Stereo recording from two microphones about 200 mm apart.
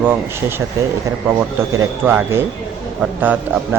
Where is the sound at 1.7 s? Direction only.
10° right (ahead or behind).